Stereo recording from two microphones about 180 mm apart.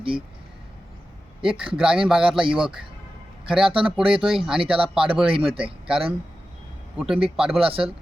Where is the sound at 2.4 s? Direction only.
30° right (ahead or behind).